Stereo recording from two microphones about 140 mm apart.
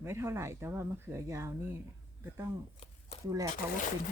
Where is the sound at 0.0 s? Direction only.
20° right (ahead or behind).